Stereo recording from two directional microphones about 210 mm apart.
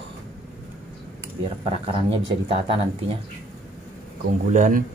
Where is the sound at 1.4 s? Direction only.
30° right (ahead or behind).